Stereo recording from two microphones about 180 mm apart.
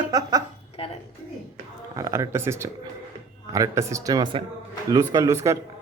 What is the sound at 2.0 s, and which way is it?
Speech, 15° right (ahead or behind).